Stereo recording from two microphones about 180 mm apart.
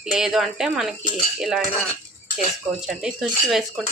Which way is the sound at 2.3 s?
5° right (ahead or behind).